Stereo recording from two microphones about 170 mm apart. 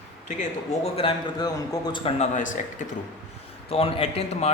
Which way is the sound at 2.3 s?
50° left (ahead or behind).